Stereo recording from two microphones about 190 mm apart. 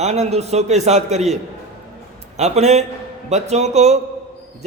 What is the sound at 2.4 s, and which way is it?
A man's voice, 35° right (ahead or behind).